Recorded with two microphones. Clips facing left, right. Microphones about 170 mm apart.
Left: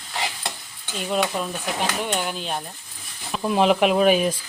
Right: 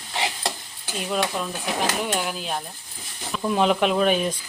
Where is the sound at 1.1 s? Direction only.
5° left (ahead or behind).